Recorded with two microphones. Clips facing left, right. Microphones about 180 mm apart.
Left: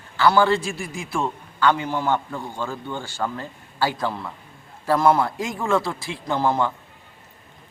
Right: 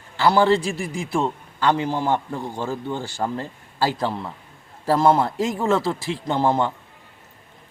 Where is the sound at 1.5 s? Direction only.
30° right (ahead or behind).